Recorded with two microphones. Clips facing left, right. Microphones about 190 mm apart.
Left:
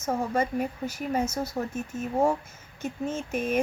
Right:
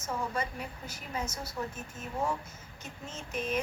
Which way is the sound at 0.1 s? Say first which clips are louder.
Left 8 dB; 45° left (ahead or behind).